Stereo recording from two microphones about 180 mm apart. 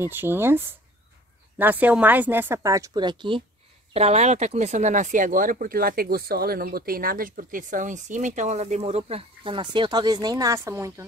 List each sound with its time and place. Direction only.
0.1 s speech: 10° right (ahead or behind)